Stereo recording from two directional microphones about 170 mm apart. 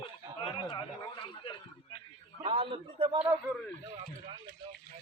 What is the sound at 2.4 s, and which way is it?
Speech, 30° right (ahead or behind).